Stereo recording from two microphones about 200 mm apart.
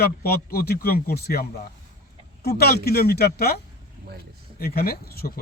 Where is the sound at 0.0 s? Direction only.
50° left (ahead or behind).